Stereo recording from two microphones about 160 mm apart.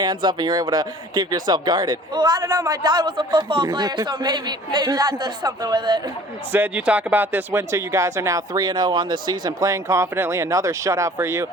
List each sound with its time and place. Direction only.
0.0 s speech: 30° right (ahead or behind)
6.5 s speech: 10° right (ahead or behind)